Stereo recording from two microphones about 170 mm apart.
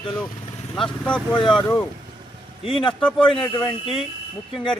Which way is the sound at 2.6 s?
30° left (ahead or behind).